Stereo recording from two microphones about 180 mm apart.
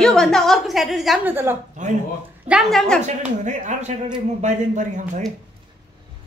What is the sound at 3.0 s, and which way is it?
Speech, 40° right (ahead or behind).